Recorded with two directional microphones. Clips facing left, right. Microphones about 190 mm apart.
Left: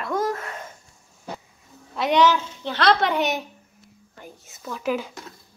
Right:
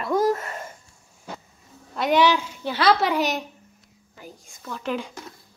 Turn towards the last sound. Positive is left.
turn(degrees=5)  # may be behind; listen again after turning